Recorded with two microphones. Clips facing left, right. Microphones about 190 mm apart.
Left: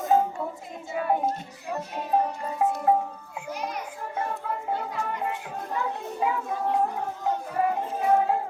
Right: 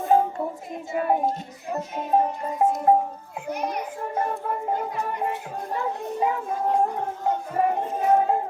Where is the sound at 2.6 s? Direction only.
35° right (ahead or behind).